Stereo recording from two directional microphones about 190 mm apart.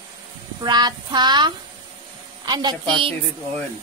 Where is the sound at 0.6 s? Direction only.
20° right (ahead or behind).